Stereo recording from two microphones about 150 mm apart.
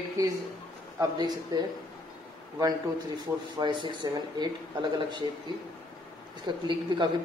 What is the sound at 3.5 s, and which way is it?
Speech, 30° right (ahead or behind).